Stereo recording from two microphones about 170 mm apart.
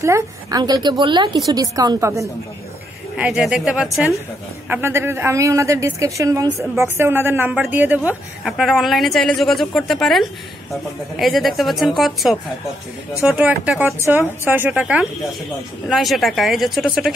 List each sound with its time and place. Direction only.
0.0 s a woman's voice: 20° right (ahead or behind)
3.2 s a woman's voice: 5° right (ahead or behind)